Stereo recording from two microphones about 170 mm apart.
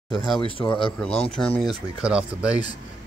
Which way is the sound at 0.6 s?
20° left (ahead or behind).